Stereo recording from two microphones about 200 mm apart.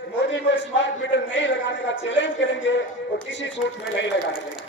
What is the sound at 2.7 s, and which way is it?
Speech, 60° left (ahead or behind).